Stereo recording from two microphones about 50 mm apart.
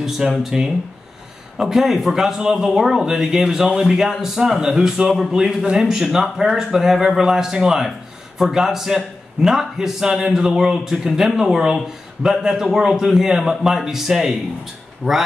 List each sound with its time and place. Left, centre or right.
0.0 s a man's voice: centre
15.0 s speech: right